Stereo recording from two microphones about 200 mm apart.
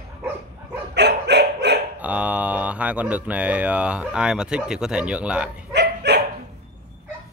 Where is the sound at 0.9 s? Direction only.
55° right (ahead or behind).